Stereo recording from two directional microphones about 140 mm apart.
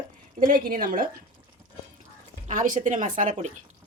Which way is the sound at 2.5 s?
65° right (ahead or behind).